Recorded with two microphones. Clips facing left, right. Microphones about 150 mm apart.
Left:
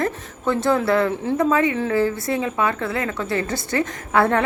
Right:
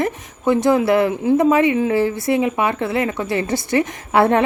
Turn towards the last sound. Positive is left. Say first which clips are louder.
# right 3 dB
turn(degrees=-20)  # may be behind; listen again after turning